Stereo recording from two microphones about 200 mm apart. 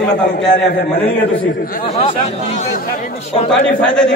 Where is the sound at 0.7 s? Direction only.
55° left (ahead or behind).